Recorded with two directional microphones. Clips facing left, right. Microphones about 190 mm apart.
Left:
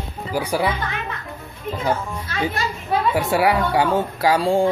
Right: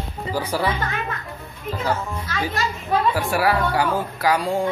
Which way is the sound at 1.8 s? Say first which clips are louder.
Left 2 dB; 25° left (ahead or behind).